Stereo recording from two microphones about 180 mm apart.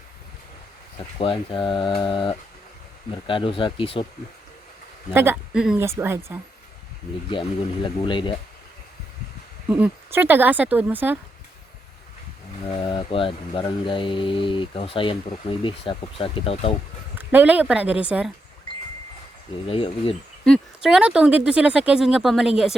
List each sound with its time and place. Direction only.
0.9 s speech: 30° left (ahead or behind)
5.1 s speech: 10° right (ahead or behind)
7.3 s speech: 25° left (ahead or behind)
9.6 s speech: 10° right (ahead or behind)
12.7 s speech: 25° left (ahead or behind)
17.2 s speech: 10° right (ahead or behind)
19.6 s speech: 30° left (ahead or behind)
20.4 s speech: centre (ahead or behind)